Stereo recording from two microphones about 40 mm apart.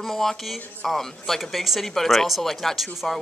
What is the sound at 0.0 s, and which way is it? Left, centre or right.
Speech, centre.